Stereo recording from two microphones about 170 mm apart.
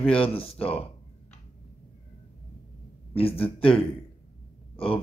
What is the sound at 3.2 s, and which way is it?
Speech, 35° left (ahead or behind).